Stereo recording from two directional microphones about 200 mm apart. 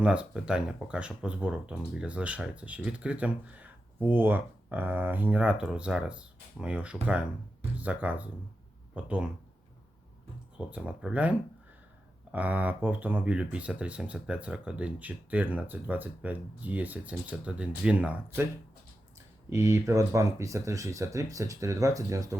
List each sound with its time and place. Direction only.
0.0 s speech: 5° right (ahead or behind)
10.6 s speech: 5° right (ahead or behind)
19.5 s speech: 15° right (ahead or behind)